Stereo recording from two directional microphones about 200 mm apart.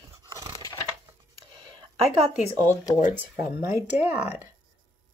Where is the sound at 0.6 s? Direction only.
15° left (ahead or behind).